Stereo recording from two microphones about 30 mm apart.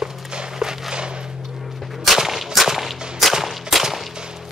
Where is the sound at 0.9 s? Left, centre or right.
Right.